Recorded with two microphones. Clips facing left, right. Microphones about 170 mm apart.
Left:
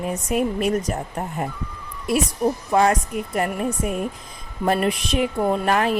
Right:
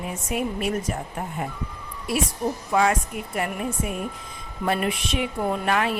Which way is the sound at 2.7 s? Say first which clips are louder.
Left 3 dB; 35° left (ahead or behind).